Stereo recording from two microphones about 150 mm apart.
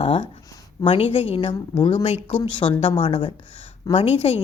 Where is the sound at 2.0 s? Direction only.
45° left (ahead or behind).